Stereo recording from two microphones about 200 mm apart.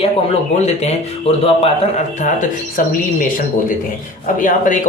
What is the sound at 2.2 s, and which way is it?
Speech, 40° left (ahead or behind).